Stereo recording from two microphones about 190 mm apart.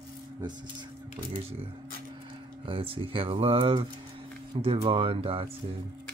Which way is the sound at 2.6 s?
30° right (ahead or behind).